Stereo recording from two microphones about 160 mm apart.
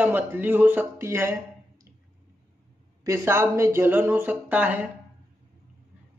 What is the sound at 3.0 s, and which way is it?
Speech, 15° right (ahead or behind).